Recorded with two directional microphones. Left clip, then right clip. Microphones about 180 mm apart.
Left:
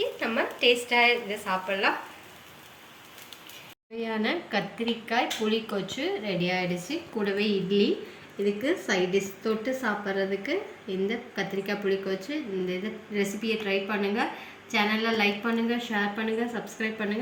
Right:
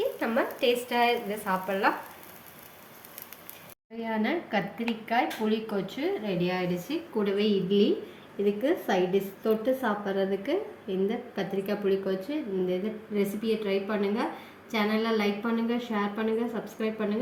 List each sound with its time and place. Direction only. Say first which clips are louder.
0.0 s a woman's voice: even; 55° right (ahead or behind)
4.0 s a woman's voice: left 1 dB; 15° right (ahead or behind)